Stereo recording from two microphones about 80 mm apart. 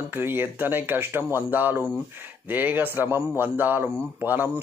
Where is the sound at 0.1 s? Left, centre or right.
Right.